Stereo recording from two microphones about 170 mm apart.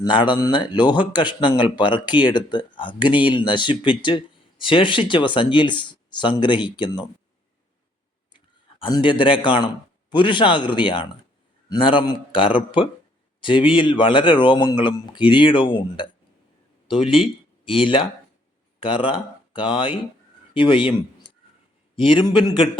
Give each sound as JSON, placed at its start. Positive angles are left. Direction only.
{"t": 0.0, "sound": "a man's voice", "side_deg": 25}
{"t": 8.8, "sound": "a man's voice", "side_deg": 30}